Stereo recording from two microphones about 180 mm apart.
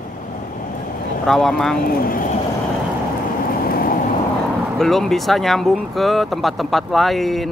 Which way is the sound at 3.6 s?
55° left (ahead or behind).